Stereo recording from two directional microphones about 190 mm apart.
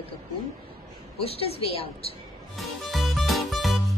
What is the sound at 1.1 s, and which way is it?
A woman's voice, 30° left (ahead or behind).